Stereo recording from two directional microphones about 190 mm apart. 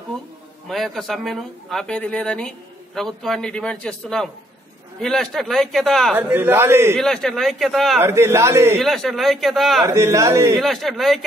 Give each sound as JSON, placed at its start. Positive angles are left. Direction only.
{"t": 0.7, "sound": "speech", "side_deg": 0}
{"t": 6.1, "sound": "a man's voice", "side_deg": -10}
{"t": 7.0, "sound": "speech", "side_deg": 0}
{"t": 8.0, "sound": "a man's voice", "side_deg": -15}
{"t": 8.7, "sound": "speech", "side_deg": 0}
{"t": 9.8, "sound": "a man's voice", "side_deg": -15}
{"t": 10.6, "sound": "speech", "side_deg": 0}